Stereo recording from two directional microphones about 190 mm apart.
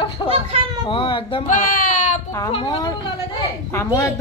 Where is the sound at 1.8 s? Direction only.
40° left (ahead or behind).